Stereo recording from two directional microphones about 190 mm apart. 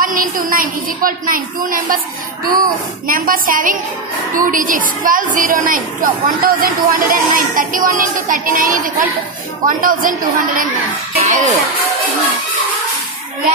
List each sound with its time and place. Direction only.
0.0 s a woman's voice: 45° right (ahead or behind)
11.1 s music: 35° right (ahead or behind)